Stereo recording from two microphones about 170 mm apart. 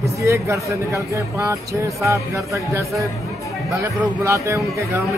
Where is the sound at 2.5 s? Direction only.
20° right (ahead or behind).